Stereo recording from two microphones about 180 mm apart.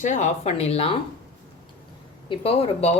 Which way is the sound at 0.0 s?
40° left (ahead or behind).